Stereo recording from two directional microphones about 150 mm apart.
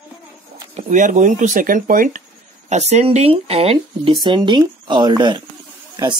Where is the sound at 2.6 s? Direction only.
50° right (ahead or behind); by 5.4 s 30° right (ahead or behind).